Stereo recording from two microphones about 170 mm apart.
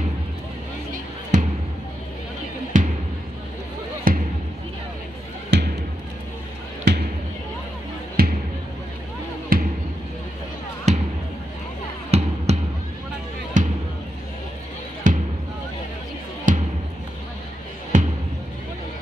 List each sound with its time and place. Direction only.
2.7 s music: 50° right (ahead or behind)
4.1 s basketball bounce: 55° right (ahead or behind)
5.5 s music: 80° right
6.9 s basketball bounce: 80° right
8.2 s music: 65° right (ahead or behind)
9.5 s basketball bounce: 60° right (ahead or behind)
10.9 s basketball bounce: 45° right (ahead or behind)
12.1 s music: 40° right (ahead or behind)
12.5 s basketball bounce: 40° right (ahead or behind)
13.5 s music: 45° right (ahead or behind)
15.0 s basketball bounce: 50° right (ahead or behind)
16.5 s music: 50° right (ahead or behind)
17.9 s basketball bounce: 45° right (ahead or behind)